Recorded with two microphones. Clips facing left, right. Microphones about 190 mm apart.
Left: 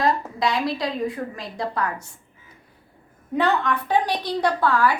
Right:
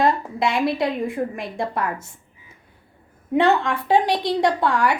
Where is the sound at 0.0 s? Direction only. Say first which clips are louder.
Right 2 dB; 25° right (ahead or behind).